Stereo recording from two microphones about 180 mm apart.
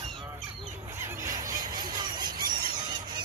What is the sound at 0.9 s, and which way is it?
Squeal, 15° right (ahead or behind).